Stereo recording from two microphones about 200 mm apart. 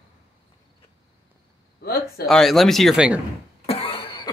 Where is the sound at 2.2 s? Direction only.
Centre (ahead or behind).